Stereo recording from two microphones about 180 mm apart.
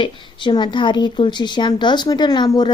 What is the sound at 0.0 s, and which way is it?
A woman's voice, 25° left (ahead or behind).